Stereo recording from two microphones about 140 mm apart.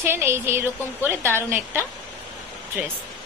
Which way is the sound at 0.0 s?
15° right (ahead or behind).